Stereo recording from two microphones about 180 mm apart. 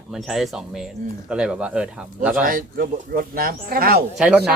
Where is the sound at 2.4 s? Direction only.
55° right (ahead or behind).